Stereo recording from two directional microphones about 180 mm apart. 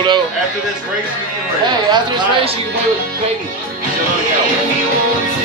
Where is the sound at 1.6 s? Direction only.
25° right (ahead or behind).